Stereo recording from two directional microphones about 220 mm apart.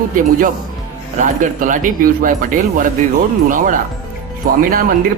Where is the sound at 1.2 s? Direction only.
35° right (ahead or behind).